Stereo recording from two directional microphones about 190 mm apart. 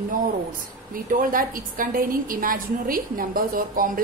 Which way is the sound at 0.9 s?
45° right (ahead or behind).